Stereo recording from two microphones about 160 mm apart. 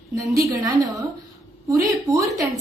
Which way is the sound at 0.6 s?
20° right (ahead or behind).